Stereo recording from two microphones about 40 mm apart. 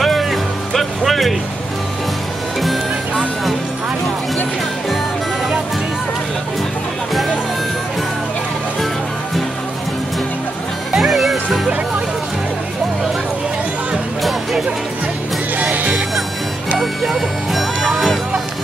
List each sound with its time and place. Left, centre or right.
0.0 s music: centre
11.0 s music: centre
15.6 s music: right
16.7 s music: centre